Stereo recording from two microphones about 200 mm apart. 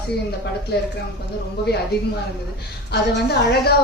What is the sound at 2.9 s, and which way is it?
Speech, 55° left (ahead or behind).